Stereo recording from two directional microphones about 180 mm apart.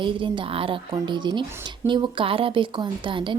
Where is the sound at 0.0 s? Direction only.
25° right (ahead or behind).